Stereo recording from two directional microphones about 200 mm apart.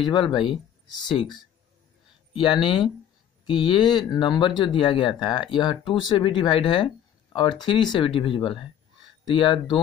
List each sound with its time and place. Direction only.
0.1 s speech: 25° left (ahead or behind)
2.3 s speech: 25° left (ahead or behind)